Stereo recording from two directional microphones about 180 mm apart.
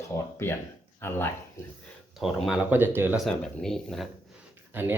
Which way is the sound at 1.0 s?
10° left (ahead or behind).